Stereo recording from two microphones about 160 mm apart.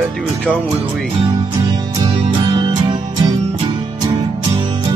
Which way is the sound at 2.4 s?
25° right (ahead or behind).